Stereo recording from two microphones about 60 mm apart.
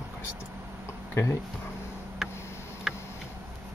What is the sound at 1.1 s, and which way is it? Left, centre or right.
Speech, left.